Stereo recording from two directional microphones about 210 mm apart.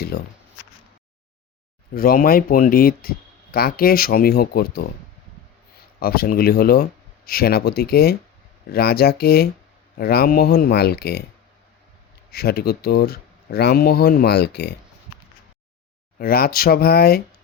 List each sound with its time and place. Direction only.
0.1 s speech: 50° left (ahead or behind)
1.9 s speech: 45° left (ahead or behind)
6.0 s speech: 45° left (ahead or behind)
12.3 s speech: 50° left (ahead or behind)
16.1 s speech: 45° left (ahead or behind)